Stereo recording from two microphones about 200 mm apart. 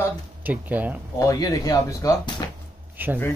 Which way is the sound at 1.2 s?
15° left (ahead or behind).